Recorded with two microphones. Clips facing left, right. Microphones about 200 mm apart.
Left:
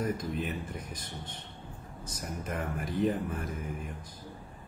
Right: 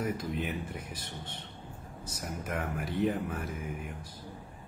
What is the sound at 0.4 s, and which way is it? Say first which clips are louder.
Speech: even; 10° right (ahead or behind).